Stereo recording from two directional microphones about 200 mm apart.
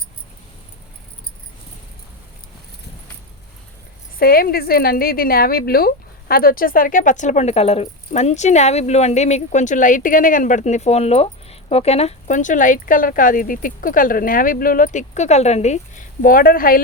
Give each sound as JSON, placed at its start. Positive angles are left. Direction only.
{"t": 4.2, "sound": "a woman's voice", "side_deg": 50}